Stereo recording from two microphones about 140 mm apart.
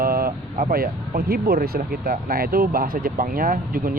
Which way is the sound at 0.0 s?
90° right.